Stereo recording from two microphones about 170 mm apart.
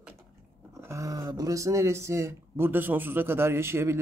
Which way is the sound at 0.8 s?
15° right (ahead or behind).